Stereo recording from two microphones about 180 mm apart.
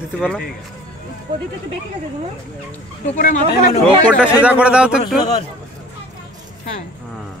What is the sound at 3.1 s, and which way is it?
Speech, 45° left (ahead or behind).